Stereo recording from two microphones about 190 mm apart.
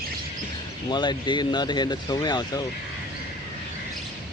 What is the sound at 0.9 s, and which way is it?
Speech, 25° left (ahead or behind).